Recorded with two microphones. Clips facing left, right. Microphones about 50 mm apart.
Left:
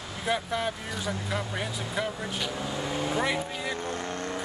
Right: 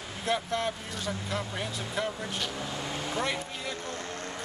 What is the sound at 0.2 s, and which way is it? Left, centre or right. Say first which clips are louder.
Speech: left 1 dB; centre.